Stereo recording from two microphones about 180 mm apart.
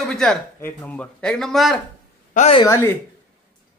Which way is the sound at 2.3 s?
40° left (ahead or behind).